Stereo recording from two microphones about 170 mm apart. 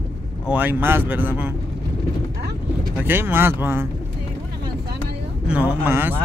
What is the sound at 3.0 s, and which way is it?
Speech, 10° right (ahead or behind).